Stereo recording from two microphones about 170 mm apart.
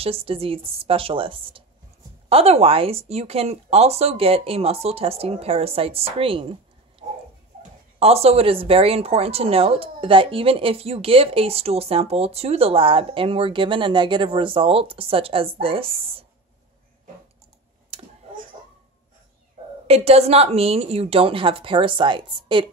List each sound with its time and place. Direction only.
0.0 s speech: 35° right (ahead or behind)
19.9 s speech: 35° right (ahead or behind)